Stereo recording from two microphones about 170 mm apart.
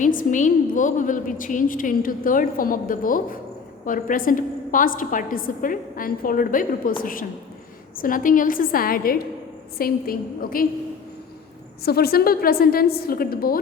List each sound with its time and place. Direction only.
0.0 s a woman's voice: 50° left (ahead or behind)
11.8 s a woman's voice: 65° left (ahead or behind)